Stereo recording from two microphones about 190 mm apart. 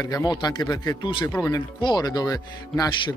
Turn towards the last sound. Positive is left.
turn(degrees=20)  # may be behind; listen again after turning